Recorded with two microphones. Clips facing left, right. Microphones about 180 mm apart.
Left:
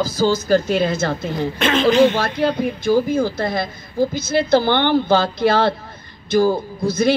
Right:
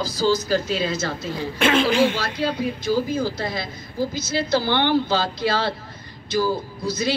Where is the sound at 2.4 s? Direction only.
55° left (ahead or behind).